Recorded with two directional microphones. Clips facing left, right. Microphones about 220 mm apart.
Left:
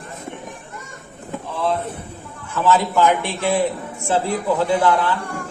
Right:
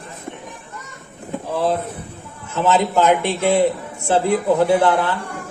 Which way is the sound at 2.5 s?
20° right (ahead or behind).